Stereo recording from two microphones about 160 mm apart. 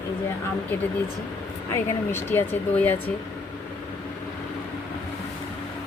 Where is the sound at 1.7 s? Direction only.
15° left (ahead or behind).